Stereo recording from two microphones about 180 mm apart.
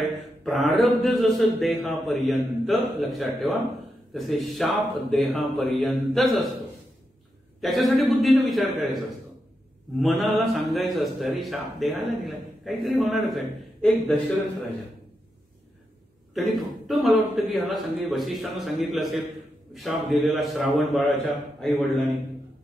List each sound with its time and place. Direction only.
0.4 s a man's voice: centre (ahead or behind)
7.6 s a man's voice: centre (ahead or behind)
10.0 s a man's voice: centre (ahead or behind)
16.3 s a man's voice: centre (ahead or behind)